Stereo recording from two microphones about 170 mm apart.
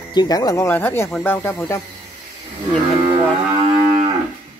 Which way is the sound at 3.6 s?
35° right (ahead or behind).